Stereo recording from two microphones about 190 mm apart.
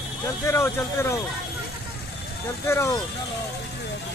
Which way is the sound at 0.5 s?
15° left (ahead or behind).